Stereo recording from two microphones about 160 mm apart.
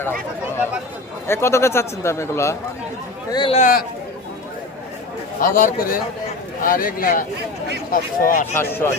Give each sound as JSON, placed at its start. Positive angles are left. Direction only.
{"t": 0.0, "sound": "a man's voice", "side_deg": 15}
{"t": 3.3, "sound": "speech", "side_deg": 30}
{"t": 3.6, "sound": "speech", "side_deg": 60}
{"t": 5.4, "sound": "speech", "side_deg": 60}
{"t": 8.5, "sound": "a man's voice", "side_deg": 15}